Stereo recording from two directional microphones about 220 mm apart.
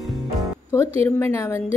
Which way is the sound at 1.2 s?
10° left (ahead or behind).